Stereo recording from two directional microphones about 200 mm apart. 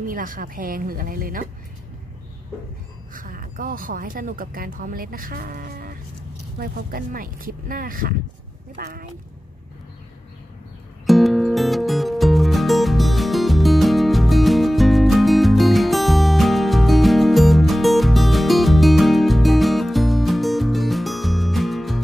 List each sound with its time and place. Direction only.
0.0 s speech: 40° right (ahead or behind)
3.1 s speech: 45° right (ahead or behind)
11.1 s music: centre (ahead or behind)